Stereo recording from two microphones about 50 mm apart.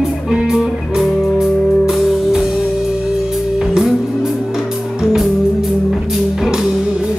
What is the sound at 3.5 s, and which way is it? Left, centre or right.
Music, centre.